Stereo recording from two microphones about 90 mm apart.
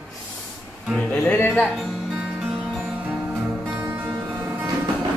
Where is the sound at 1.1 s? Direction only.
20° left (ahead or behind).